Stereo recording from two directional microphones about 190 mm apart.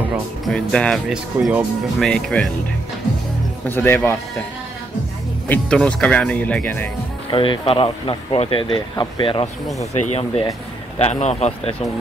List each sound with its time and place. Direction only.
0.5 s speech: 5° left (ahead or behind)
3.6 s speech: 10° left (ahead or behind)
5.5 s speech: 5° left (ahead or behind)
7.2 s speech: 25° left (ahead or behind)